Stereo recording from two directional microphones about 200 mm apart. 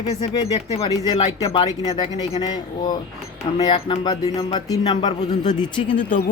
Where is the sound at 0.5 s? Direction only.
30° left (ahead or behind).